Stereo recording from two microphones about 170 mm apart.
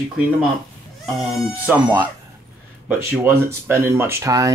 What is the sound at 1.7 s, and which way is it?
Speech, 10° right (ahead or behind).